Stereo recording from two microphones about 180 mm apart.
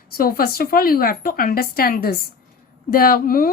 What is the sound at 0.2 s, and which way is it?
A woman's voice, 55° left (ahead or behind).